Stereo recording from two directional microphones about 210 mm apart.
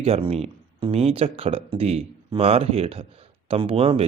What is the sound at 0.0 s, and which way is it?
Speech, 30° right (ahead or behind).